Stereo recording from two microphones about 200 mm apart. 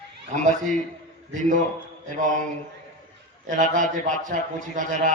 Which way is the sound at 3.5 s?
40° right (ahead or behind).